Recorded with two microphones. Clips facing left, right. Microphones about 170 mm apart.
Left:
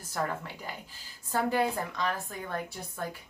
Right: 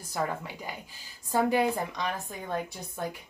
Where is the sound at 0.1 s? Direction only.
15° right (ahead or behind).